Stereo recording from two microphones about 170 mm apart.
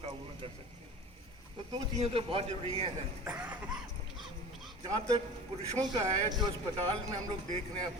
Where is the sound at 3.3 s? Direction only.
5° right (ahead or behind).